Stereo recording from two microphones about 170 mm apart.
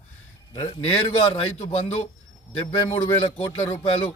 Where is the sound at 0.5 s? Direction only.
30° left (ahead or behind).